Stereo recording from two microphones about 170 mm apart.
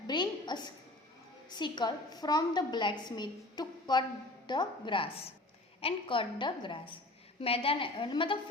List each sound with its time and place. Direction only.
0.1 s a woman's voice: 25° left (ahead or behind)